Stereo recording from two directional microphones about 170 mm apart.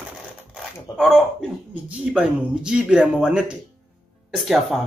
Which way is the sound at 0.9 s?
20° left (ahead or behind).